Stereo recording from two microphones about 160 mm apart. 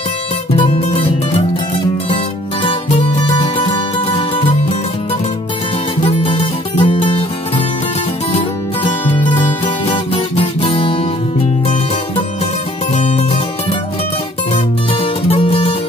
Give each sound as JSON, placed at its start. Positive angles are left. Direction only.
{"t": 3.2, "sound": "music", "side_deg": 30}
{"t": 6.0, "sound": "music", "side_deg": 35}
{"t": 12.9, "sound": "music", "side_deg": 45}
{"t": 15.2, "sound": "music", "side_deg": 35}